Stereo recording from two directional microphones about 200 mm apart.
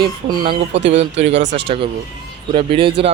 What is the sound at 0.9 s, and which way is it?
Speech, 30° right (ahead or behind).